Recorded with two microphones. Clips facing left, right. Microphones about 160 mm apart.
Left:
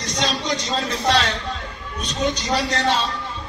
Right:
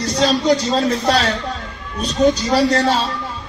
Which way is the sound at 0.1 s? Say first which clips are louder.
Right 9 dB; 35° right (ahead or behind).